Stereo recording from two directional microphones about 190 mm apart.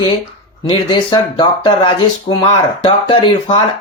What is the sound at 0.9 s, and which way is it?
Speech, 25° left (ahead or behind).